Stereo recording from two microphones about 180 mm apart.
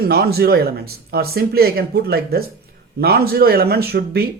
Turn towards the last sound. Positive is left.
turn(degrees=-60)  # may be behind; listen again after turning